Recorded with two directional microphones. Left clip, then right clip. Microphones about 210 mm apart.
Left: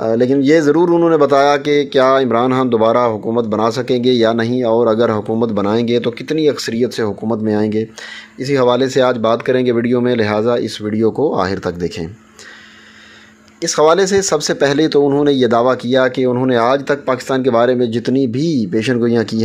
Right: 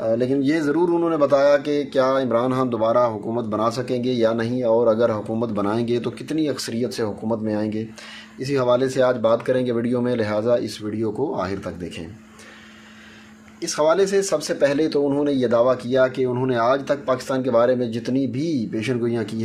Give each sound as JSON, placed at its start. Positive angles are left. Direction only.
{"t": 0.0, "sound": "speech", "side_deg": 40}
{"t": 13.6, "sound": "speech", "side_deg": 40}